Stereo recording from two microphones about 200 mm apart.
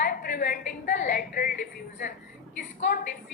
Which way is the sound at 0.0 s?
45° left (ahead or behind).